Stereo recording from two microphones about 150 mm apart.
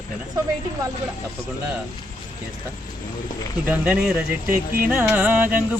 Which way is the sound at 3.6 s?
15° right (ahead or behind).